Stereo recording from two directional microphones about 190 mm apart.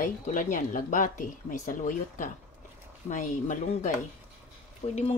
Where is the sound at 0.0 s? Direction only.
45° left (ahead or behind).